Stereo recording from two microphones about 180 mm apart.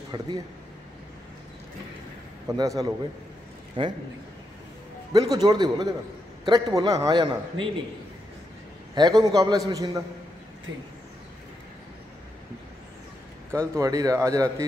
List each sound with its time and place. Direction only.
0.1 s a man's voice: 25° right (ahead or behind)
2.4 s a man's voice: 20° right (ahead or behind)
5.1 s a man's voice: 20° right (ahead or behind)
9.0 s a man's voice: 25° right (ahead or behind)
13.5 s speech: 15° right (ahead or behind)